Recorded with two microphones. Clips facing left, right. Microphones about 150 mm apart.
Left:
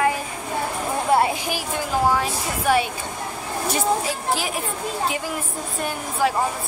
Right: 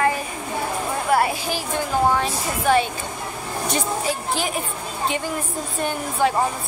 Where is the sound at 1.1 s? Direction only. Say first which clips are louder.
Even; 20° left (ahead or behind).